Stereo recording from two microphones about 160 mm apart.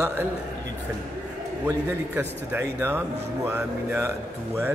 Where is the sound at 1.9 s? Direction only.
15° right (ahead or behind).